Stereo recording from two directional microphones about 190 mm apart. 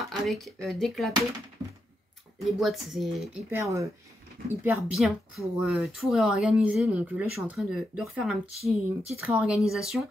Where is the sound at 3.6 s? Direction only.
15° right (ahead or behind).